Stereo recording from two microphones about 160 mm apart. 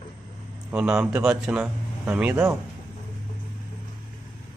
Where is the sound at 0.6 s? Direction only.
5° right (ahead or behind).